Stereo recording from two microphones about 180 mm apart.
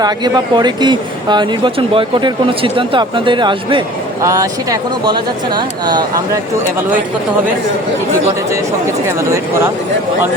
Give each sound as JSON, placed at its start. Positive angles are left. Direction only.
{"t": 0.0, "sound": "speech", "side_deg": -25}